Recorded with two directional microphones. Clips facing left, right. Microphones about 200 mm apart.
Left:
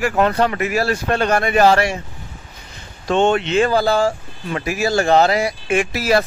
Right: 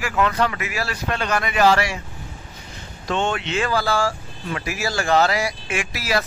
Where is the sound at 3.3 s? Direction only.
35° left (ahead or behind).